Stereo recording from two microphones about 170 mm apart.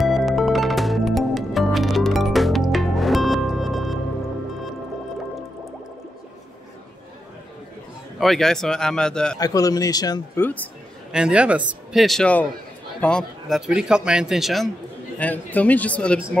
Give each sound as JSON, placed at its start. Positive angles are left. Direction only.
{"t": 0.0, "sound": "music", "side_deg": 0}
{"t": 8.2, "sound": "speech", "side_deg": 0}
{"t": 9.4, "sound": "a man's voice", "side_deg": 20}
{"t": 11.1, "sound": "speech", "side_deg": -5}